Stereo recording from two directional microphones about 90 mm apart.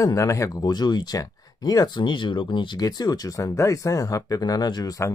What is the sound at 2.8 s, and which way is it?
Speech, 45° left (ahead or behind).